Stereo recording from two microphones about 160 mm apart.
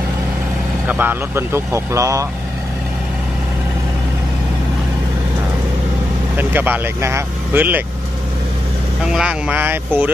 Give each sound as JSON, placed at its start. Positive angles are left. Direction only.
{"t": 0.8, "sound": "speech", "side_deg": -10}
{"t": 6.3, "sound": "speech", "side_deg": -10}
{"t": 9.1, "sound": "speech", "side_deg": -5}